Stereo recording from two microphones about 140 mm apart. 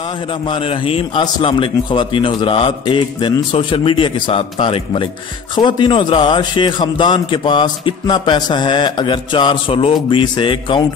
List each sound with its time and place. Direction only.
0.5 s a man's voice: 40° left (ahead or behind)